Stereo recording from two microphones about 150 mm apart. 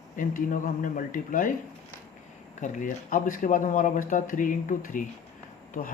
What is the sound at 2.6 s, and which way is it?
Speech, 65° left (ahead or behind).